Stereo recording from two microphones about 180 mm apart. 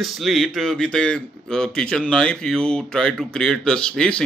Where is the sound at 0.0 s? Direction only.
Centre (ahead or behind).